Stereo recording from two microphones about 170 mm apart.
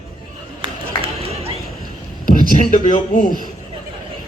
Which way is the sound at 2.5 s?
50° left (ahead or behind).